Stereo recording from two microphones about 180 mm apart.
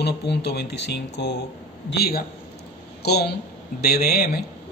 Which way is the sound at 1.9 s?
60° left (ahead or behind).